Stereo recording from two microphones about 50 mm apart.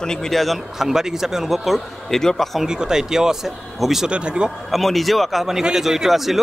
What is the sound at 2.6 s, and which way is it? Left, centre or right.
A man's voice, centre.